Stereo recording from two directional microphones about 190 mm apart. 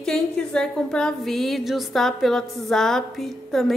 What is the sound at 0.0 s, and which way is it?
A woman's voice, 5° left (ahead or behind).